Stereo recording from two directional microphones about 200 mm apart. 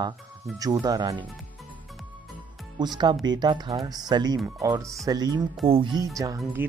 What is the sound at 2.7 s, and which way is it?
Speech, 20° right (ahead or behind).